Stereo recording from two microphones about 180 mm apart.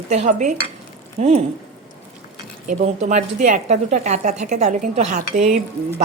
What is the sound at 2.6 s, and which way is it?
A woman's voice, 40° right (ahead or behind).